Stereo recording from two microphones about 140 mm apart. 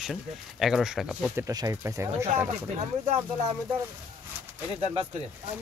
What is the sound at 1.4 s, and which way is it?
Speech, 20° right (ahead or behind).